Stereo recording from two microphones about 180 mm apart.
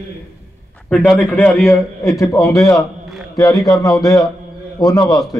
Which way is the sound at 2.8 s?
Centre (ahead or behind).